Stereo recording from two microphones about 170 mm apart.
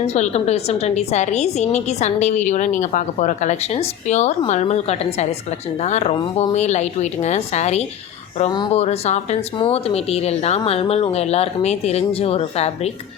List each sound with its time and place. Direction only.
0.0 s a woman's voice: 40° left (ahead or behind)
8.4 s a woman's voice: 25° left (ahead or behind)